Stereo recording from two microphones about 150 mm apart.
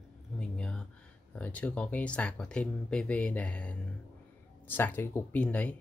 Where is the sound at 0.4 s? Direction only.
5° left (ahead or behind).